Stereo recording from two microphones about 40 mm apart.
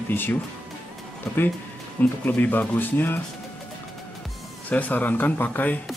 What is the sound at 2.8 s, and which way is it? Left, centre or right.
Speech, left.